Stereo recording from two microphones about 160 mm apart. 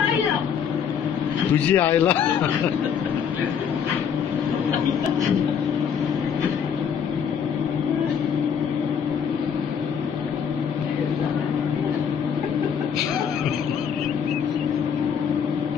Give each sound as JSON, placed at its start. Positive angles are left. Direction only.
{"t": 1.7, "sound": "speech", "side_deg": 10}